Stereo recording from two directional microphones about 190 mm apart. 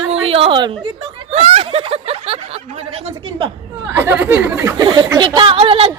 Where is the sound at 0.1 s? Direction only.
30° right (ahead or behind).